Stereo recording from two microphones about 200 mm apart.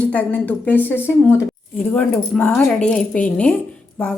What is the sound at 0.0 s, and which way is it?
Speech, 5° left (ahead or behind).